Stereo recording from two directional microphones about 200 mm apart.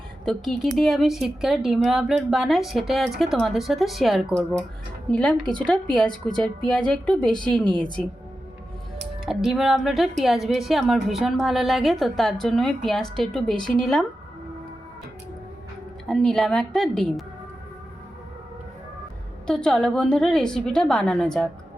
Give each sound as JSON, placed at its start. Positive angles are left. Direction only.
{"t": 0.3, "sound": "a woman's voice", "side_deg": 0}
{"t": 9.2, "sound": "a woman's voice", "side_deg": 0}
{"t": 16.0, "sound": "a woman's voice", "side_deg": 5}
{"t": 19.5, "sound": "a woman's voice", "side_deg": 5}